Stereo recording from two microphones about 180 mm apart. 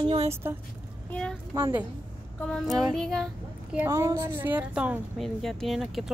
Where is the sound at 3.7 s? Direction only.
15° right (ahead or behind).